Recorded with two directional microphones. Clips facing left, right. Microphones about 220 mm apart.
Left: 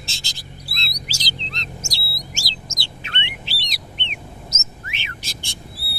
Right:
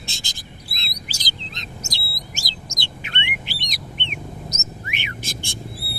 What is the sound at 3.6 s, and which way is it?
Bird, 50° right (ahead or behind).